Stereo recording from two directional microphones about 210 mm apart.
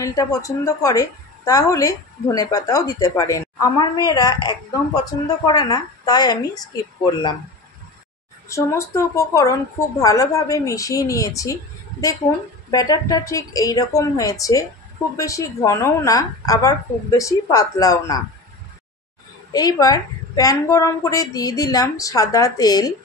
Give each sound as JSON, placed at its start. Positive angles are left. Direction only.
{"t": 0.0, "sound": "a woman's voice", "side_deg": 15}
{"t": 8.5, "sound": "a woman's voice", "side_deg": 15}
{"t": 12.7, "sound": "a woman's voice", "side_deg": 20}
{"t": 19.5, "sound": "a woman's voice", "side_deg": 15}